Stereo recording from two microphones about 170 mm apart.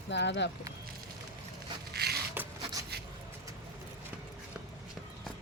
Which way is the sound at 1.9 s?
70° right (ahead or behind).